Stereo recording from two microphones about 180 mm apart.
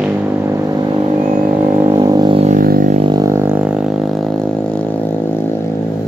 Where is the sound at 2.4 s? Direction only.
50° right (ahead or behind).